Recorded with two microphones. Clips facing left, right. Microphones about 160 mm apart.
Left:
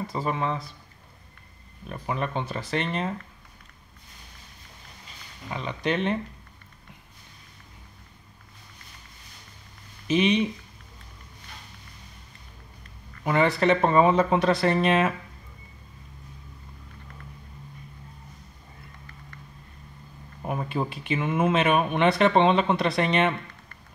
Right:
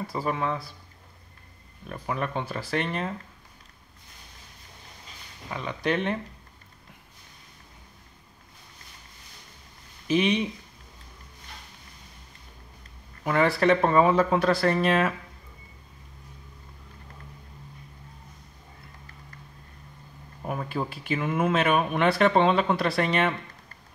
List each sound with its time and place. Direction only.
0.0 s speech: 5° right (ahead or behind)
1.9 s speech: centre (ahead or behind)
5.5 s speech: centre (ahead or behind)
10.0 s speech: centre (ahead or behind)
13.2 s speech: centre (ahead or behind)
20.4 s speech: centre (ahead or behind)